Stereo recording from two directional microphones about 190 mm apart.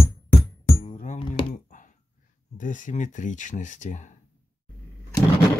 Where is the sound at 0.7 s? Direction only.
40° left (ahead or behind).